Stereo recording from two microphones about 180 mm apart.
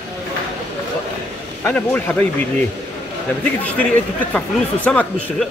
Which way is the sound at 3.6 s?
5° left (ahead or behind).